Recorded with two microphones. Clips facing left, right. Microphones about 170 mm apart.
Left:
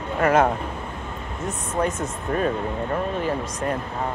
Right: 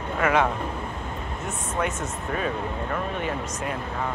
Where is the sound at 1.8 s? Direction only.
40° left (ahead or behind).